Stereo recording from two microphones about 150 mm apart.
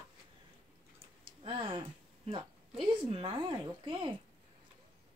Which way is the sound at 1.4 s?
35° right (ahead or behind).